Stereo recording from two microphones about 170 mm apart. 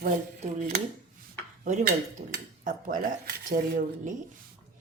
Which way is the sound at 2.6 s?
55° right (ahead or behind).